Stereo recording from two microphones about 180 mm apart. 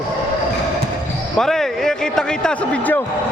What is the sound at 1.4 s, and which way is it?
Speech, centre (ahead or behind).